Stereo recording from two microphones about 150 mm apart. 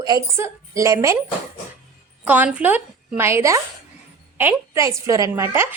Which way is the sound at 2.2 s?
10° right (ahead or behind).